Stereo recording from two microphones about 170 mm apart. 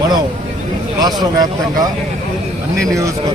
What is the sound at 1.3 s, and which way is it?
Speech, 20° right (ahead or behind).